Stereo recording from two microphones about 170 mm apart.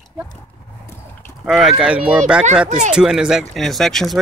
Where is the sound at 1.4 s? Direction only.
Centre (ahead or behind).